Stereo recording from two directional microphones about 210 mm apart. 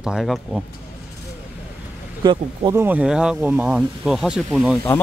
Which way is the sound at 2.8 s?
5° right (ahead or behind).